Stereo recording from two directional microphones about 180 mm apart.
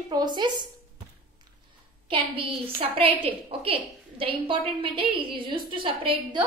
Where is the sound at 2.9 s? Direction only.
30° right (ahead or behind).